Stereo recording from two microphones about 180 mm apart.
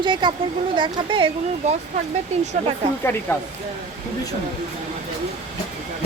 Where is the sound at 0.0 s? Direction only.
25° right (ahead or behind).